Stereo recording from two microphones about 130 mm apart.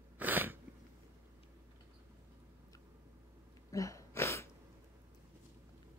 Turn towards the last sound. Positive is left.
turn(degrees=20)  # may be behind; listen again after turning